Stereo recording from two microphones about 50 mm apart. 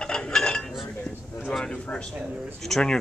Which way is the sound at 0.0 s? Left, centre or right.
Centre.